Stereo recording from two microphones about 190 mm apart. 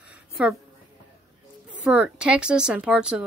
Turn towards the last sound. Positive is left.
turn(degrees=-5)  # may be behind; listen again after turning